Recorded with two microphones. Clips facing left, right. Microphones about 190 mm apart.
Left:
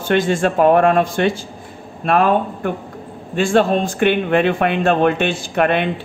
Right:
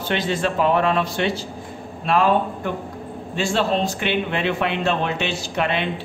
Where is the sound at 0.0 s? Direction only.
50° left (ahead or behind).